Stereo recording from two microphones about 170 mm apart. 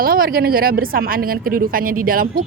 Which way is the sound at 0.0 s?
60° right (ahead or behind).